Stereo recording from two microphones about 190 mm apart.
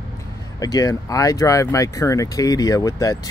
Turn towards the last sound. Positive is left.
turn(degrees=15)  # may be behind; listen again after turning